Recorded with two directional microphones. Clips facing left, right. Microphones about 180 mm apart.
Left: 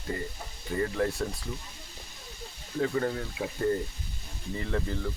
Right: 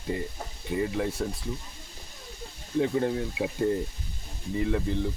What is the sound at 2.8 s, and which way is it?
Speech, 20° right (ahead or behind).